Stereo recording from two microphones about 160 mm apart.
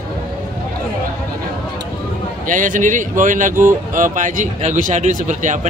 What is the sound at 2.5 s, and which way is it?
Speech, 55° right (ahead or behind).